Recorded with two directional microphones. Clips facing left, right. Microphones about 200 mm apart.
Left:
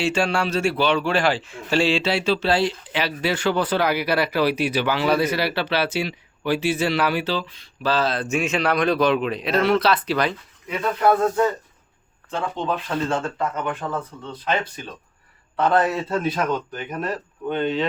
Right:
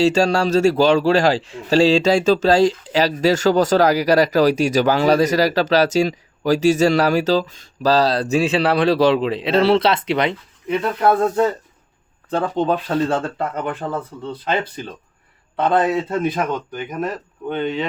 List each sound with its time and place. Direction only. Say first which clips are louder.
0.0 s a man's voice: right 6 dB; 40° right (ahead or behind); by 10.3 s 20° right (ahead or behind)
12.3 s a man's voice: right 6 dB; 35° right (ahead or behind)
15.5 s a man's voice: right 2 dB; 20° right (ahead or behind)
16.7 s speech: right 3 dB; centre (ahead or behind)